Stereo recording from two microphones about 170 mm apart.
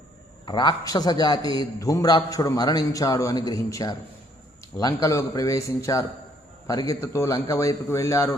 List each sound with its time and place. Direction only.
0.4 s a man's voice: 25° left (ahead or behind)